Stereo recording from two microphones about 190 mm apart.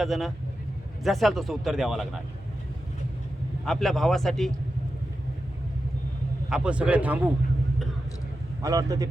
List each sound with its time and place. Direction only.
0.0 s speech: centre (ahead or behind)
3.7 s speech: centre (ahead or behind)
6.5 s a man's voice: 5° right (ahead or behind)
8.6 s a man's voice: 20° right (ahead or behind)